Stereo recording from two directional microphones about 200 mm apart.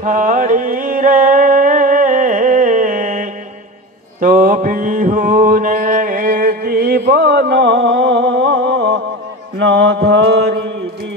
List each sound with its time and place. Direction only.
0.0 s mantra: 40° right (ahead or behind)
7.8 s music: 70° right (ahead or behind)
9.6 s mantra: 60° right (ahead or behind)